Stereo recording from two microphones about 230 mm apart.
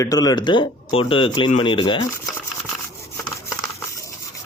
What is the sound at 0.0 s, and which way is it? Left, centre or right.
Speech, centre.